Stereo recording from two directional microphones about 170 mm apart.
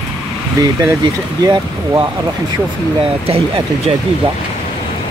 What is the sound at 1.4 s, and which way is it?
Speech, 25° right (ahead or behind).